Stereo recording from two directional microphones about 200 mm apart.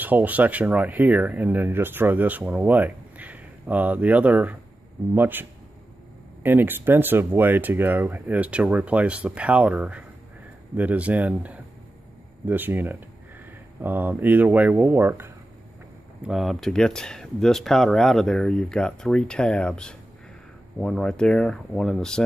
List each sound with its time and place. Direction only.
0.0 s speech: 10° right (ahead or behind)